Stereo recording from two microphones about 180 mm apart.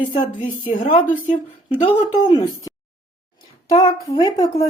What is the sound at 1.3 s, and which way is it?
A woman's voice, 30° left (ahead or behind).